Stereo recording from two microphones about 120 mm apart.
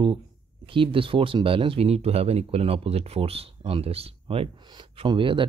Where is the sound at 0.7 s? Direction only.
45° right (ahead or behind).